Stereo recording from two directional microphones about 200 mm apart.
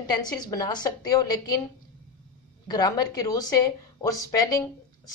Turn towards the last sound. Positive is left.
turn(degrees=15)  # may be behind; listen again after turning